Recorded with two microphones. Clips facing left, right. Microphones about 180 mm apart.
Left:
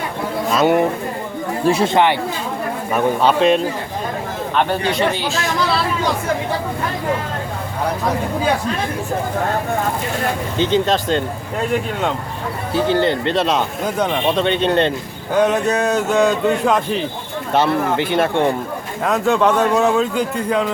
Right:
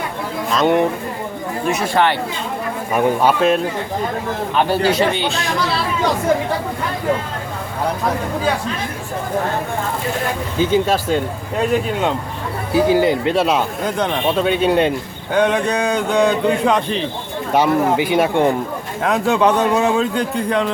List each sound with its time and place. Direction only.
0.5 s speech: 5° left (ahead or behind)
1.6 s speech: 30° left (ahead or behind)
2.9 s a man's voice: 10° right (ahead or behind)
10.6 s speech: 10° right (ahead or behind)
12.7 s speech: 5° right (ahead or behind)
13.8 s speech: 5° left (ahead or behind)
14.3 s speech: 5° right (ahead or behind)
15.3 s a man's voice: 5° left (ahead or behind)
17.5 s speech: 10° right (ahead or behind)
19.0 s a man's voice: centre (ahead or behind)